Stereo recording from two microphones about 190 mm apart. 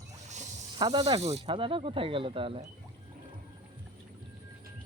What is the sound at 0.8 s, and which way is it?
Speech, 25° right (ahead or behind).